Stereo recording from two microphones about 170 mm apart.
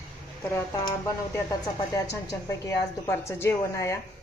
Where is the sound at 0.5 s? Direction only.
20° left (ahead or behind).